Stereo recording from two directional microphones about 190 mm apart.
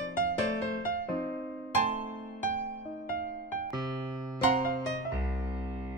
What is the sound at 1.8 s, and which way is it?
Music, 40° right (ahead or behind).